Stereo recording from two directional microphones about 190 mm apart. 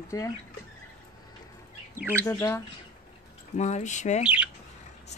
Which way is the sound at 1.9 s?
10° right (ahead or behind).